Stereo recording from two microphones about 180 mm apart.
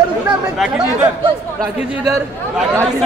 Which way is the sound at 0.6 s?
Centre (ahead or behind).